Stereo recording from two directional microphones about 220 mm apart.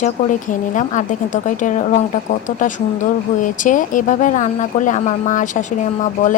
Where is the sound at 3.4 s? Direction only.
35° left (ahead or behind).